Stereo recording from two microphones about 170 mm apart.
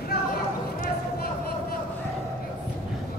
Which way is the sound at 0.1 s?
70° left (ahead or behind).